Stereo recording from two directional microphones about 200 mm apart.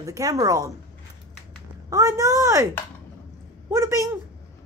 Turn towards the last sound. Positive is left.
turn(degrees=-15)  # may be behind; listen again after turning